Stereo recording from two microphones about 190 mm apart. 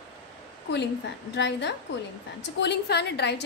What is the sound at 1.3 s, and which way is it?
A woman's voice, 65° left (ahead or behind).